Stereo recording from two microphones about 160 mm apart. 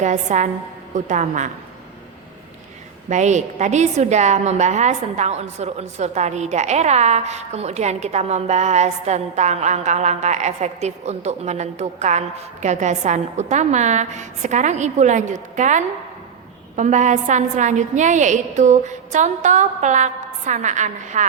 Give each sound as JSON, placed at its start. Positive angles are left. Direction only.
{"t": 0.0, "sound": "a woman's voice", "side_deg": -50}
{"t": 3.1, "sound": "a woman's voice", "side_deg": -50}